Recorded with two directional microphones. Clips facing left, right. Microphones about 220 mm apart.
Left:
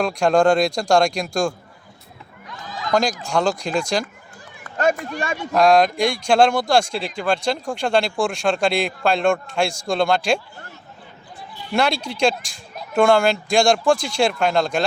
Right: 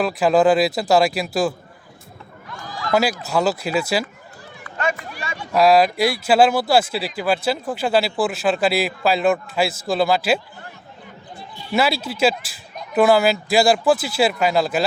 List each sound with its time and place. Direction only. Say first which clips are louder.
0.0 s speech: right 1 dB; 5° right (ahead or behind)
2.5 s run: right 1 dB; 20° left (ahead or behind)
2.9 s speech: right 1 dB; 5° right (ahead or behind)
4.6 s run: left 5 dB; 45° left (ahead or behind)
5.4 s speech: right 1 dB; 5° right (ahead or behind)
11.7 s speech: right 1 dB; 5° right (ahead or behind)